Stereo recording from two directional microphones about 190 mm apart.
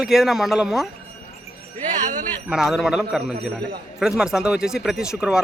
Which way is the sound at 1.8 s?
40° right (ahead or behind).